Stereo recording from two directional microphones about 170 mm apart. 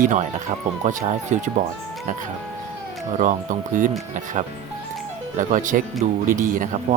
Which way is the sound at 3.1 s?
50° right (ahead or behind).